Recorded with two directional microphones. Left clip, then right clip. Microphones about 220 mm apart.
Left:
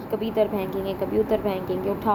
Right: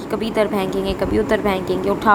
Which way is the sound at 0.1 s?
15° right (ahead or behind).